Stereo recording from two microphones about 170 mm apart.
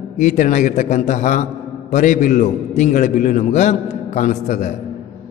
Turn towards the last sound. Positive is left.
turn(degrees=45)  # may be behind; listen again after turning